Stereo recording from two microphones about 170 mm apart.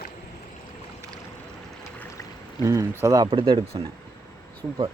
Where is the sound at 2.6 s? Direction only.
20° right (ahead or behind).